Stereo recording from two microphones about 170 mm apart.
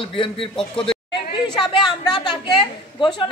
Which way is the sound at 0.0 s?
30° left (ahead or behind).